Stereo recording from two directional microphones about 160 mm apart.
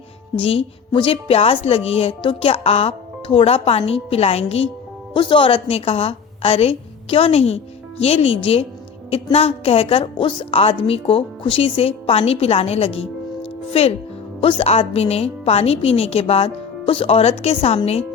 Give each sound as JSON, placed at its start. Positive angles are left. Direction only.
{"t": 0.3, "sound": "a woman's voice", "side_deg": 35}
{"t": 14.4, "sound": "a woman's voice", "side_deg": 40}